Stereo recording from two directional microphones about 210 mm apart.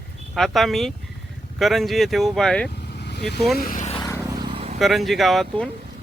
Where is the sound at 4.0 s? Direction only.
15° left (ahead or behind).